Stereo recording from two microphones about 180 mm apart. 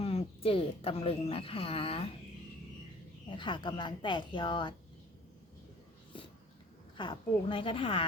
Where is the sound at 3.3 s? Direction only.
25° left (ahead or behind).